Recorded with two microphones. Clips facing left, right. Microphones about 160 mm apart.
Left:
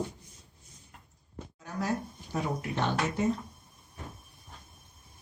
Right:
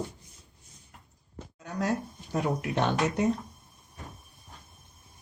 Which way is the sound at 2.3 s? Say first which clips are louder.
Right 4 dB; 70° right (ahead or behind).